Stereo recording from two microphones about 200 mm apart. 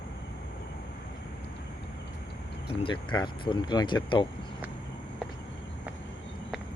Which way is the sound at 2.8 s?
25° left (ahead or behind).